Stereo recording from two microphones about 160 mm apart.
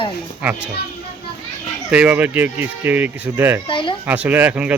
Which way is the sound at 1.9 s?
10° right (ahead or behind).